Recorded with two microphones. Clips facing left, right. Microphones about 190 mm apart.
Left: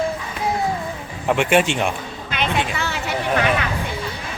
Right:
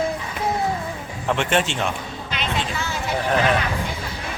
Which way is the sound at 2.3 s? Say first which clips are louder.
Left 4 dB; 60° left (ahead or behind).